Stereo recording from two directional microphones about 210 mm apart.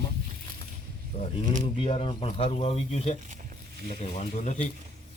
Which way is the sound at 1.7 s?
25° left (ahead or behind).